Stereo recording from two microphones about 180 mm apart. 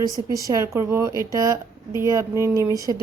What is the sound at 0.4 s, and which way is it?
A woman's voice, 15° right (ahead or behind).